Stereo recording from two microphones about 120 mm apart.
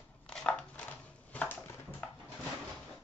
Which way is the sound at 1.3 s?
15° left (ahead or behind).